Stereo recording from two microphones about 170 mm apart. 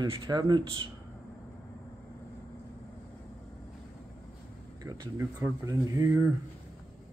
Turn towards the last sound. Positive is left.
turn(degrees=-20)  # may be behind; listen again after turning